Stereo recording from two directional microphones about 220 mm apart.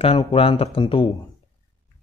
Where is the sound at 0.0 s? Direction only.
25° left (ahead or behind).